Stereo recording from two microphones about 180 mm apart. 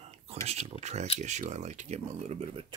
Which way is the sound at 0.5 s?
35° right (ahead or behind).